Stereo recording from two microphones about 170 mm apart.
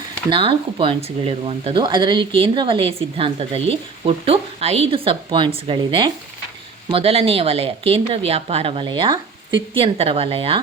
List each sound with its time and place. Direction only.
0.3 s speech: 30° right (ahead or behind)